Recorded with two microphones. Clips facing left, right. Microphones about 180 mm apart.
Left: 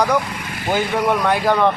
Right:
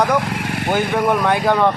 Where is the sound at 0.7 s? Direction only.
Centre (ahead or behind).